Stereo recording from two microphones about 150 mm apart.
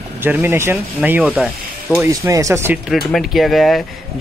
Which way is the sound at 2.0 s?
20° right (ahead or behind).